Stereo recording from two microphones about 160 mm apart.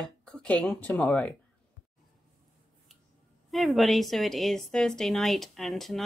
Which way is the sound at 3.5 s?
Centre (ahead or behind).